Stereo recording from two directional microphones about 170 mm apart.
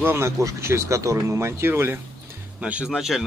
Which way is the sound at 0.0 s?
15° right (ahead or behind).